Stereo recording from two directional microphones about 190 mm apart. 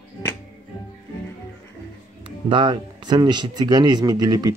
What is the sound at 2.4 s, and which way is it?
Speech, 25° right (ahead or behind).